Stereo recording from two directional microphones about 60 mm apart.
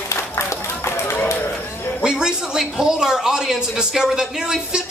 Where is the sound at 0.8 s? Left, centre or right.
Left.